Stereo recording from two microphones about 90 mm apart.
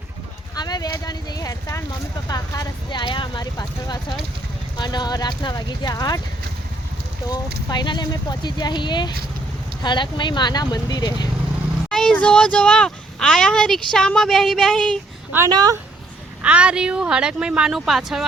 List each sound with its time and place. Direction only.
0.5 s speech: 50° left (ahead or behind)
2.9 s speech: 60° left (ahead or behind)
7.3 s speech: 50° left (ahead or behind)
11.9 s vehicle: 5° left (ahead or behind)
12.1 s speech: 15° left (ahead or behind)
15.4 s speech: 50° right (ahead or behind)
16.4 s speech: 15° right (ahead or behind)